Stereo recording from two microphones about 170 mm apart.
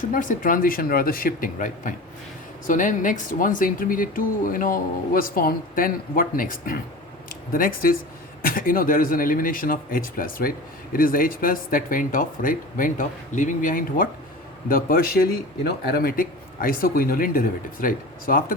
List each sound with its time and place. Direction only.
0.1 s speech: 50° left (ahead or behind)